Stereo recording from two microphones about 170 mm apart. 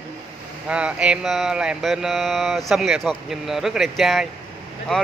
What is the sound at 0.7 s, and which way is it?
Mantra, 5° right (ahead or behind).